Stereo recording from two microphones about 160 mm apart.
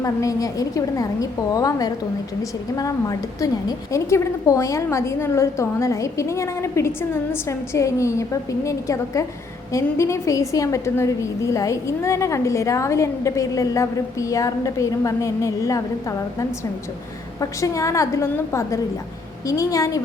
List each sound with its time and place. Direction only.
0.0 s a woman's voice: 20° left (ahead or behind)